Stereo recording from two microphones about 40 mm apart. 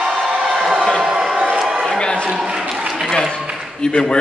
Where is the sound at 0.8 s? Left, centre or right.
Centre.